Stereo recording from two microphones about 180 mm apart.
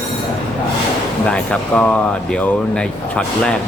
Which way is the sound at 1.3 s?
5° left (ahead or behind).